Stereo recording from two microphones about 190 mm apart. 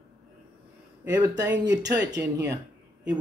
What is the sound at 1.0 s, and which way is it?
Speech, 20° right (ahead or behind).